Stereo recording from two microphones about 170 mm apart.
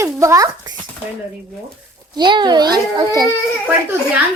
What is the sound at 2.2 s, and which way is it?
A child's voice, 25° right (ahead or behind).